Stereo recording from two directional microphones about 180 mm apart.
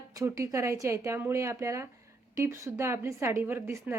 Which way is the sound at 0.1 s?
20° right (ahead or behind).